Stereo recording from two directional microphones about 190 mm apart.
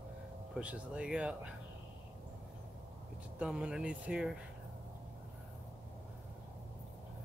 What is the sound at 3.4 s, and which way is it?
Speech, 5° right (ahead or behind).